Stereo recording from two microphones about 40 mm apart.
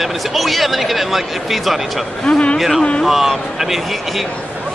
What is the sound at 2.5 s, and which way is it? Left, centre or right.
Speech, centre.